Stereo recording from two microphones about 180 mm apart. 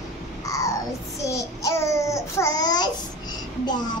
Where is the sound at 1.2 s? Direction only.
15° left (ahead or behind).